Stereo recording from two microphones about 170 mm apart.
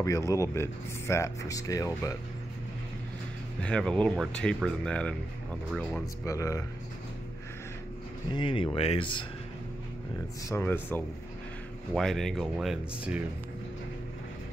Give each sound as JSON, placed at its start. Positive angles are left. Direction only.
{"t": 0.0, "sound": "speech", "side_deg": 20}
{"t": 3.6, "sound": "speech", "side_deg": 5}
{"t": 6.2, "sound": "speech", "side_deg": 20}
{"t": 8.3, "sound": "speech", "side_deg": 30}
{"t": 10.5, "sound": "speech", "side_deg": 10}
{"t": 11.9, "sound": "speech", "side_deg": 0}